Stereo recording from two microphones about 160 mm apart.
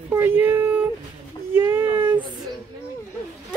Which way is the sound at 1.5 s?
15° right (ahead or behind).